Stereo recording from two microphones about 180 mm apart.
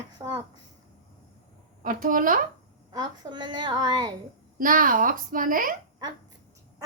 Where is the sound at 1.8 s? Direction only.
50° right (ahead or behind).